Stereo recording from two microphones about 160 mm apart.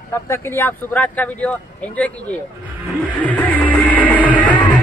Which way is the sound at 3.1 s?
10° left (ahead or behind).